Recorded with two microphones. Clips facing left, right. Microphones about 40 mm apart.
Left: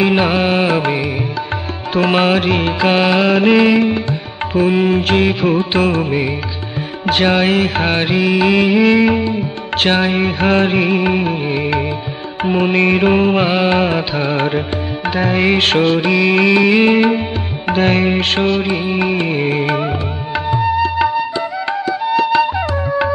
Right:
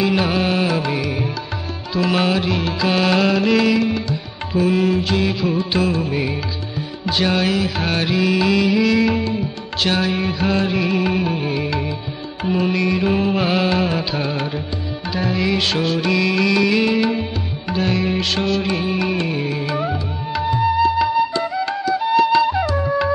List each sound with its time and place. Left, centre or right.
0.0 s music: left
7.1 s music: left
9.8 s music: left
21.8 s music: left